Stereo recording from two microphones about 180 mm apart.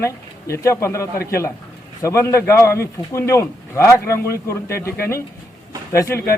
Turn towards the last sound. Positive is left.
turn(degrees=15)  # may be behind; listen again after turning